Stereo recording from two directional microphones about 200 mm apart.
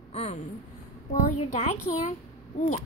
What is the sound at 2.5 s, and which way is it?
Speech, 35° left (ahead or behind).